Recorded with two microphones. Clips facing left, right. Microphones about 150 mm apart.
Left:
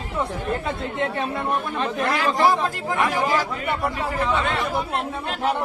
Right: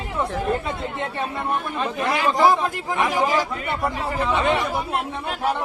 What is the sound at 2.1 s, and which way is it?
Speech, 20° right (ahead or behind).